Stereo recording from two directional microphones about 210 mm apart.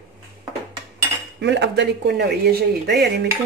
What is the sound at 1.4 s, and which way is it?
Speech, 55° right (ahead or behind).